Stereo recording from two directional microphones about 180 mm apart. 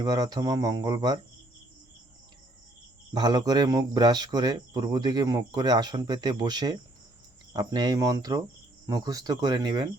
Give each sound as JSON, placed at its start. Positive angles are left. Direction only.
{"t": 0.0, "sound": "speech", "side_deg": -20}
{"t": 3.1, "sound": "speech", "side_deg": -25}